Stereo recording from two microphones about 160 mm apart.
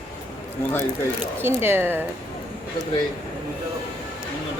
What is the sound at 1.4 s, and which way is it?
Speech, 15° right (ahead or behind).